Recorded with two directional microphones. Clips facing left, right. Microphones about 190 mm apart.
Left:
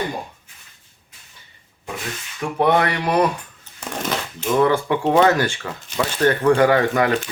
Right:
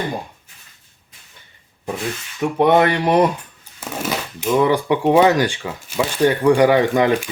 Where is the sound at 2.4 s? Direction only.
20° right (ahead or behind).